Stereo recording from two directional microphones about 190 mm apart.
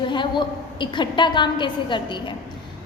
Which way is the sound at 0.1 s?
25° left (ahead or behind).